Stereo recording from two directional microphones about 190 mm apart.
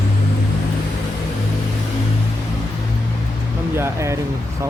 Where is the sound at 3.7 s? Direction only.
15° right (ahead or behind).